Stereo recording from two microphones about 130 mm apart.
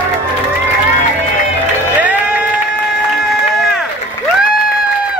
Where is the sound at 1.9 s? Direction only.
10° right (ahead or behind).